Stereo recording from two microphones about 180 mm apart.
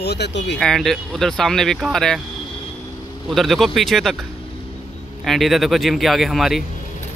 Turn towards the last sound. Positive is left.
turn(degrees=0)  # may be behind; listen again after turning